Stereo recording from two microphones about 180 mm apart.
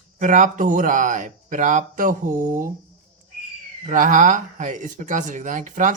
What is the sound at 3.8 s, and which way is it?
Speech, 45° right (ahead or behind).